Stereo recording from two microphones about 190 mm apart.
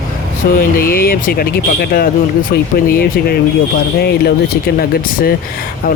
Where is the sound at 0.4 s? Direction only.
55° left (ahead or behind).